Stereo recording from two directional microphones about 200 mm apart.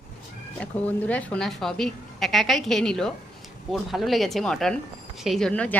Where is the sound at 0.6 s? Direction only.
5° left (ahead or behind).